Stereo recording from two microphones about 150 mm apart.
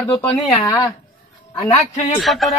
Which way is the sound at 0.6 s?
20° left (ahead or behind).